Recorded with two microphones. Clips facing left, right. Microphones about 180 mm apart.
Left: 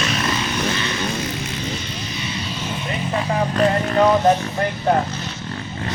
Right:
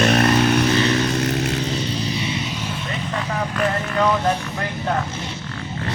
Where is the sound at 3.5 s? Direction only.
30° left (ahead or behind).